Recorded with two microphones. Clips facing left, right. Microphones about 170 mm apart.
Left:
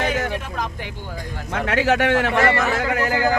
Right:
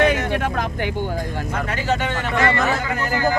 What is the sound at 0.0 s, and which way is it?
Vehicle, 65° right (ahead or behind).